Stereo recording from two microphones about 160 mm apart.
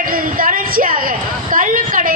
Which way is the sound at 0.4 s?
60° right (ahead or behind).